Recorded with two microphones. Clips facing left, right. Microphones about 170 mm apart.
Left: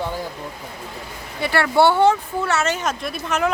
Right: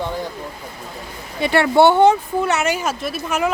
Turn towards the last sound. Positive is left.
turn(degrees=-5)  # may be behind; listen again after turning